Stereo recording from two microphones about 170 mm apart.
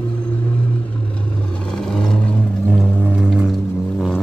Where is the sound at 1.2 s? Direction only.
5° left (ahead or behind).